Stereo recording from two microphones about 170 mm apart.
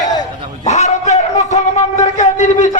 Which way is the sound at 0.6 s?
45° left (ahead or behind).